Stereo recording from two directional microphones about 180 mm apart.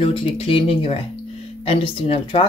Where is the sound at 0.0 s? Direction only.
30° left (ahead or behind).